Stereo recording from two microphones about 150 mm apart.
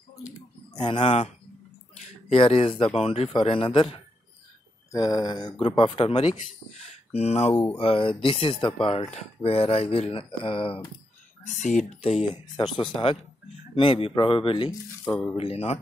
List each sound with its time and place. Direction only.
0.8 s speech: 35° left (ahead or behind)
6.8 s speech: 45° left (ahead or behind)
11.4 s speech: 55° left (ahead or behind)
12.6 s speech: 35° left (ahead or behind)